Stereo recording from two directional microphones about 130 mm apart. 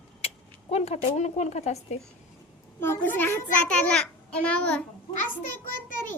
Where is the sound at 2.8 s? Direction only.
15° left (ahead or behind).